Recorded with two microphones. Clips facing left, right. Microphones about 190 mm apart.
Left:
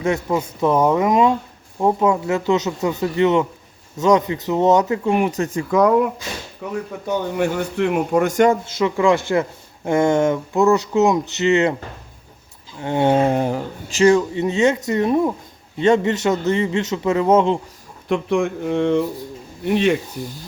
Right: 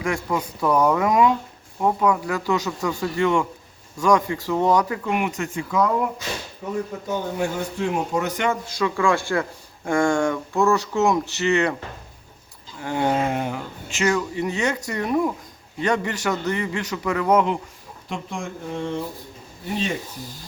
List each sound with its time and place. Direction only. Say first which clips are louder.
0.0 s speech: left 4 dB; 25° left (ahead or behind)
7.3 s a man's voice: left 5 dB; 65° left (ahead or behind); by 8.5 s 45° left (ahead or behind)
8.6 s speech: left 4 dB; 20° left (ahead or behind)
12.8 s speech: left 6 dB; 25° left (ahead or behind)
18.1 s speech: left 12 dB; 65° left (ahead or behind)